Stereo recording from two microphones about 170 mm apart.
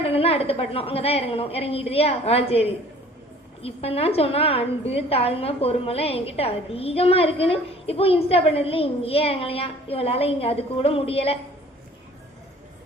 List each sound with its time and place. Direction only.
0.0 s a woman's voice: 35° left (ahead or behind)